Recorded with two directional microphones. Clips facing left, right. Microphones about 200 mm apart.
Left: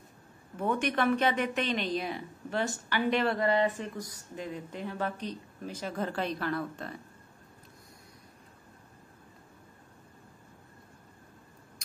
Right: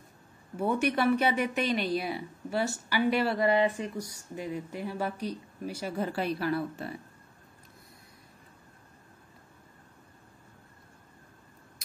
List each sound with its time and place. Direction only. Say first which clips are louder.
0.6 s speech: right 2 dB; 10° right (ahead or behind)